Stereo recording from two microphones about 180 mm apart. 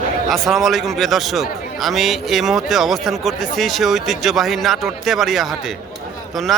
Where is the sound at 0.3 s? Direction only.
Centre (ahead or behind).